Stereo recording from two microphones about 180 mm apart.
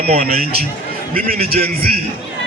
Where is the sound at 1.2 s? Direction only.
55° right (ahead or behind).